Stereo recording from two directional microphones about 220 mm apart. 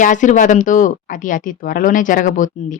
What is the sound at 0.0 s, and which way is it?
A woman's voice, 35° left (ahead or behind).